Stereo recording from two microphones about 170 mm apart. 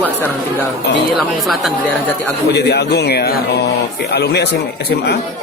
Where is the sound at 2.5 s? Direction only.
80° left.